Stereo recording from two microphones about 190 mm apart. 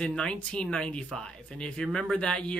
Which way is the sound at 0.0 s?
5° left (ahead or behind).